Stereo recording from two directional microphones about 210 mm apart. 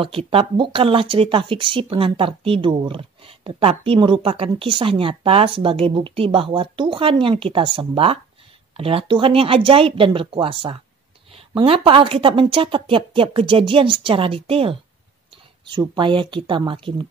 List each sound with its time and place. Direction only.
0.0 s speech: 25° right (ahead or behind)